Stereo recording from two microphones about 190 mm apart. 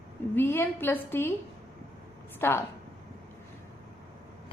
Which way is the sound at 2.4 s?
10° left (ahead or behind).